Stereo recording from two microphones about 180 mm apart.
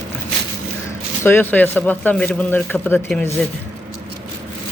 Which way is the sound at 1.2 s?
10° left (ahead or behind).